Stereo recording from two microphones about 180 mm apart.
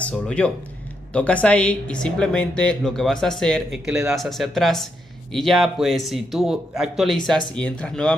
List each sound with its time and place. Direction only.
0.0 s speech: 5° left (ahead or behind)